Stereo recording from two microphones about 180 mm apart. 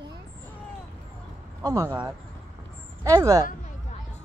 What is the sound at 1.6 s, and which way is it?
Speech, 20° right (ahead or behind).